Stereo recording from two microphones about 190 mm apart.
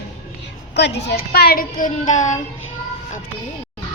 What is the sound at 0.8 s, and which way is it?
A child's voice, 65° left (ahead or behind).